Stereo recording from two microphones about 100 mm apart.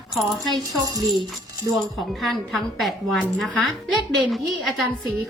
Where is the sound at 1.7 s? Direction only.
Centre (ahead or behind).